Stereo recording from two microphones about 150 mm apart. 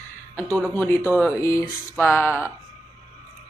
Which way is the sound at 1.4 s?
20° left (ahead or behind).